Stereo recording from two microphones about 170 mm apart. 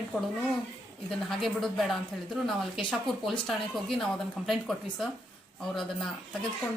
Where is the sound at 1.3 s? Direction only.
Centre (ahead or behind).